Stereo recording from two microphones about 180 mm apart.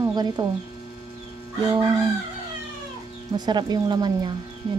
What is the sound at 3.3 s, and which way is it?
Speech, 25° right (ahead or behind).